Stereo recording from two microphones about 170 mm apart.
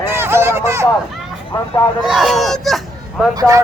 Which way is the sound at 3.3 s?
20° right (ahead or behind).